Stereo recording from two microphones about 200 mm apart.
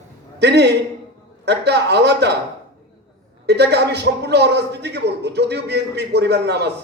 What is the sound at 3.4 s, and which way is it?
A man's voice, 55° right (ahead or behind).